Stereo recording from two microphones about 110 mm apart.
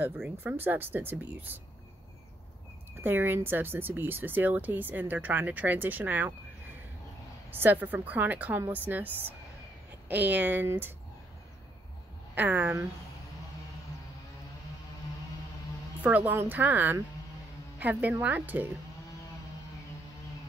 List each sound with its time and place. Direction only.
0.0 s speech: 15° right (ahead or behind)
3.0 s speech: 20° right (ahead or behind)
7.5 s speech: 15° right (ahead or behind)
12.4 s speech: 15° right (ahead or behind)
16.0 s speech: 15° right (ahead or behind)